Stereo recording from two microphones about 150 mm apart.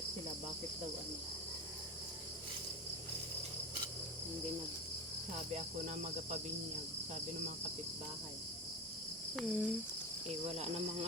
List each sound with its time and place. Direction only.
9.3 s cricket: centre (ahead or behind)
10.2 s cricket: 45° right (ahead or behind)